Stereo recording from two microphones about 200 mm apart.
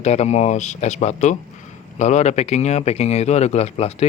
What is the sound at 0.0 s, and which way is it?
A man's voice, 35° left (ahead or behind).